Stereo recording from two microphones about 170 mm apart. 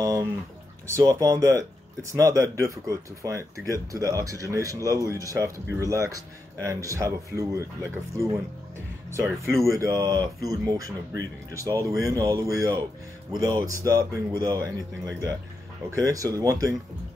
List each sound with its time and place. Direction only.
0.0 s a sound: 20° right (ahead or behind)
0.8 s speech: 15° right (ahead or behind)
9.4 s speech: 15° right (ahead or behind)